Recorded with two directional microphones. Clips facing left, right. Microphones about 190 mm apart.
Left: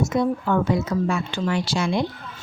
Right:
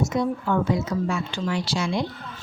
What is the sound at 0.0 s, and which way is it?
Speech, 55° left (ahead or behind).